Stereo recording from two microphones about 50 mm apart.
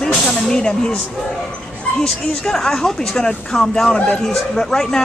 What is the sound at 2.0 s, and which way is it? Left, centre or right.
Speech, centre.